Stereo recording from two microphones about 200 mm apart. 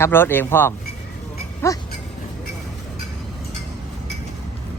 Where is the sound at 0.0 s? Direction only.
10° left (ahead or behind).